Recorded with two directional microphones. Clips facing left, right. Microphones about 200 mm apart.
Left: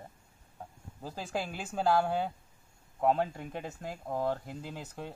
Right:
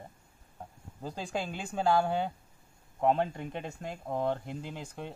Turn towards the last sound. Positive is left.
turn(degrees=5)  # may be behind; listen again after turning